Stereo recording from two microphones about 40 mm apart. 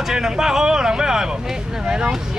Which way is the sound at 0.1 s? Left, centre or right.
Centre.